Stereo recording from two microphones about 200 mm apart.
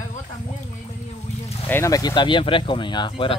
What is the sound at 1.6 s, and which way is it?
Speech, 15° left (ahead or behind).